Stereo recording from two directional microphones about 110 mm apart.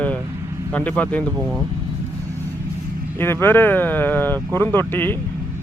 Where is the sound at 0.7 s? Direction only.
10° left (ahead or behind).